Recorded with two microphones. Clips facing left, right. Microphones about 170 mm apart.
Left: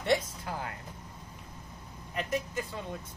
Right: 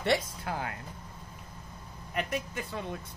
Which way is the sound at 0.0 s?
70° right (ahead or behind).